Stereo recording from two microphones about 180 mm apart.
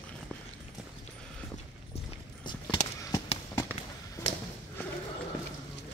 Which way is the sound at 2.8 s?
40° left (ahead or behind).